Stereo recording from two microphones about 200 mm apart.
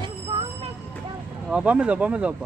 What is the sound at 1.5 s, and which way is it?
Speech, 5° right (ahead or behind).